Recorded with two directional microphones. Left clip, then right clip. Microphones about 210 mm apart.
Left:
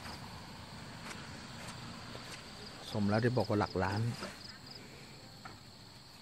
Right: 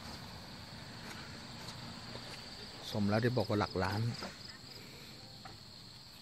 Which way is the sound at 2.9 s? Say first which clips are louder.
Left 1 dB; 5° left (ahead or behind).